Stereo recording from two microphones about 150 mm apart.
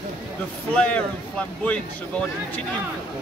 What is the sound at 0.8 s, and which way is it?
Speech, 10° left (ahead or behind).